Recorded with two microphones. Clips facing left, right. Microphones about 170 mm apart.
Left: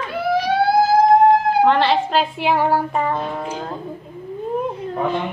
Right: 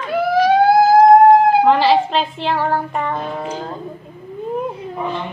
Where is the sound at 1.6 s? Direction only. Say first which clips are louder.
Right 2 dB; centre (ahead or behind).